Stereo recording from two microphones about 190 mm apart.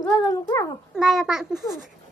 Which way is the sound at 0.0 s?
15° left (ahead or behind).